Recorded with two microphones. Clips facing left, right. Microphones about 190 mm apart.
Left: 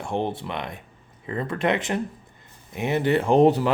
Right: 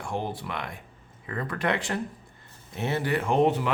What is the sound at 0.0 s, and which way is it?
A man's voice, 25° left (ahead or behind).